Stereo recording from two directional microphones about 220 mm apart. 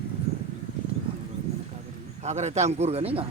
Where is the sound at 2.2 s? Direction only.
30° right (ahead or behind).